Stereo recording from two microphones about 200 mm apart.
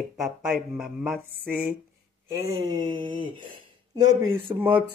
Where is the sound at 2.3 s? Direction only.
15° right (ahead or behind).